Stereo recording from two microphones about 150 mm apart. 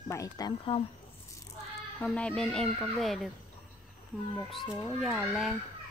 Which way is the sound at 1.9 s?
5° left (ahead or behind).